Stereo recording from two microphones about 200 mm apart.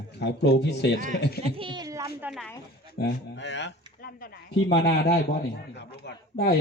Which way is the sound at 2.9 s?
60° left (ahead or behind).